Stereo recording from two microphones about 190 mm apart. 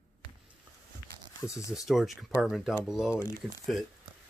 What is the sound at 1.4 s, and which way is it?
Speech, 15° left (ahead or behind).